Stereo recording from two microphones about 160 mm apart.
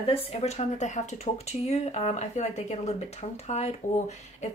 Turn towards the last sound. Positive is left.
turn(degrees=45)  # may be behind; listen again after turning